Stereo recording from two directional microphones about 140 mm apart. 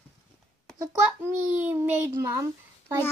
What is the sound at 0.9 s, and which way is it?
Speech, 15° right (ahead or behind).